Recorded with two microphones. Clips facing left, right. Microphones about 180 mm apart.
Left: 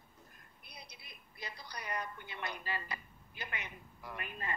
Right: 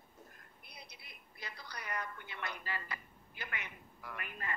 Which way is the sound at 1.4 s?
15° left (ahead or behind).